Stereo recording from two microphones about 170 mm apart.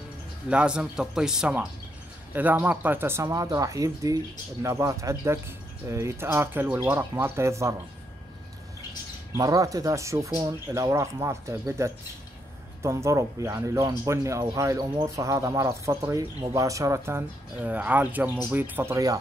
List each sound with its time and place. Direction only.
0.5 s a man's voice: 5° right (ahead or behind)
9.4 s speech: 20° right (ahead or behind)